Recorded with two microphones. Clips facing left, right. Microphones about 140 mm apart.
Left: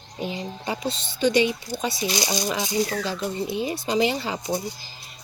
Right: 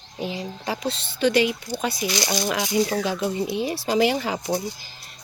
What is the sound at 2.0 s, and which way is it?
Speech, 15° left (ahead or behind).